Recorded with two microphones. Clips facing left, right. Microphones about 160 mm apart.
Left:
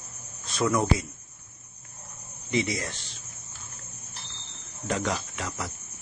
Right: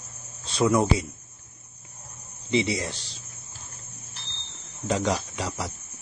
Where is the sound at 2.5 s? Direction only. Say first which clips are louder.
Right 3 dB; 30° right (ahead or behind).